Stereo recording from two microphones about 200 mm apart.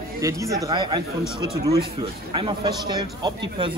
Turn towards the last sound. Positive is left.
turn(degrees=-20)  # may be behind; listen again after turning